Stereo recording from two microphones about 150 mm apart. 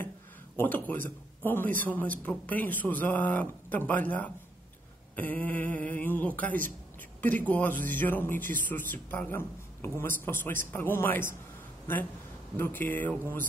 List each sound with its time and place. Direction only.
0.6 s a man's voice: 10° left (ahead or behind)
8.5 s speech: 60° right (ahead or behind)
8.9 s speech: 10° left (ahead or behind)
12.5 s speech: 15° left (ahead or behind)